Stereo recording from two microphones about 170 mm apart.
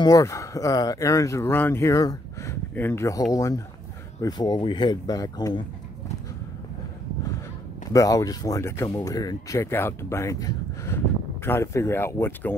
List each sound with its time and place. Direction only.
0.0 s speech: 20° left (ahead or behind)
7.9 s speech: 20° left (ahead or behind)